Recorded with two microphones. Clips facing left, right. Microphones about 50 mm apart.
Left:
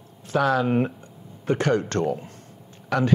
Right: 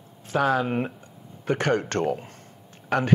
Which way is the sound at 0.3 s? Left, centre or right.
Right.